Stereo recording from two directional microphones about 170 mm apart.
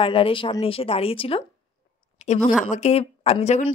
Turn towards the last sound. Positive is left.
turn(degrees=40)  # may be behind; listen again after turning